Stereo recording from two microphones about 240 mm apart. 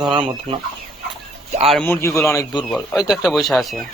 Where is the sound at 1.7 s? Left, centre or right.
Centre.